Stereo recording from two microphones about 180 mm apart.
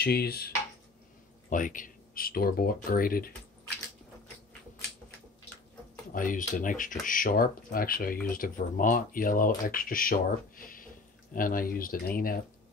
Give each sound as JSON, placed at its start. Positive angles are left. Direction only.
{"t": 0.0, "sound": "speech", "side_deg": 60}
{"t": 1.5, "sound": "speech", "side_deg": 45}
{"t": 6.1, "sound": "speech", "side_deg": 50}